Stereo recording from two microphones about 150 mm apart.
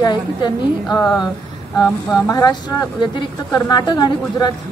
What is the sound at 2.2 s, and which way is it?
A woman's voice, 20° left (ahead or behind).